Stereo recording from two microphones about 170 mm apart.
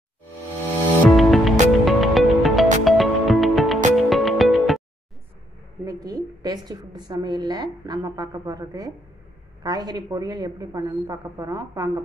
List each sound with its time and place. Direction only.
1.1 s music: centre (ahead or behind)
5.9 s a woman's voice: 20° right (ahead or behind)